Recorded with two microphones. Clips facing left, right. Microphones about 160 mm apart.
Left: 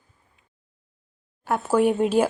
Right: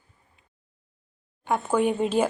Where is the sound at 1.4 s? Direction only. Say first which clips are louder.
Left 3 dB; 5° left (ahead or behind).